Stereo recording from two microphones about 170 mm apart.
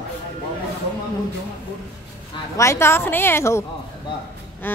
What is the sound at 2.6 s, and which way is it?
A woman's voice, 15° left (ahead or behind).